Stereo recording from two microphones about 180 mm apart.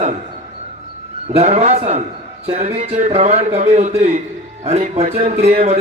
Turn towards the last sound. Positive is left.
turn(degrees=-40)  # may be behind; listen again after turning